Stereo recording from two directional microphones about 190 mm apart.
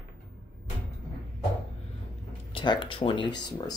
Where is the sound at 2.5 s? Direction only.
25° left (ahead or behind).